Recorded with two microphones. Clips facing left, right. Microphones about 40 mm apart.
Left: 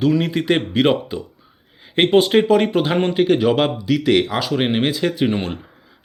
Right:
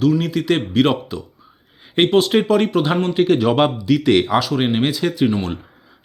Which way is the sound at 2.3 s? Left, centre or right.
Centre.